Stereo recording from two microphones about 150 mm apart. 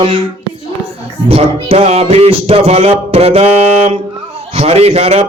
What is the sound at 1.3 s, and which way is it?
A man's voice, 40° right (ahead or behind).